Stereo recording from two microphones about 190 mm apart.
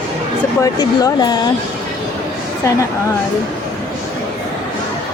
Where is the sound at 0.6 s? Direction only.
20° left (ahead or behind).